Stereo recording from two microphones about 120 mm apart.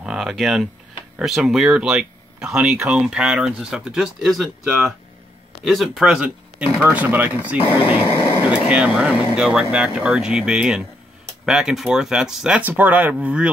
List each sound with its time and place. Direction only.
0.0 s speech: 5° right (ahead or behind)
7.6 s speech: 45° left (ahead or behind)
8.1 s vehicle: 20° left (ahead or behind)
8.5 s speech: 10° right (ahead or behind)